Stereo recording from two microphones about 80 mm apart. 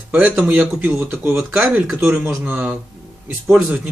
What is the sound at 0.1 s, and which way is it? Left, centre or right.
Speech, centre.